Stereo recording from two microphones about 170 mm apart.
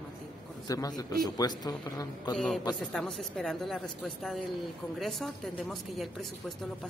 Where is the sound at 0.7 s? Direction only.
20° left (ahead or behind).